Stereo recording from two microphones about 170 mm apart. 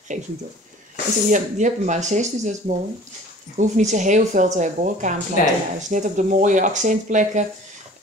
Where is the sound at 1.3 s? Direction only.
45° right (ahead or behind).